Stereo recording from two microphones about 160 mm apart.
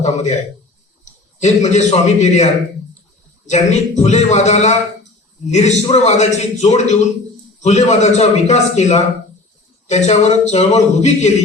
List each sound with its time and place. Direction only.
0.0 s a man's voice: 45° left (ahead or behind)
1.4 s a man's voice: 45° left (ahead or behind)